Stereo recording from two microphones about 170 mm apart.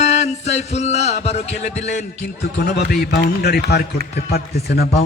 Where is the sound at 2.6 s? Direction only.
70° left (ahead or behind).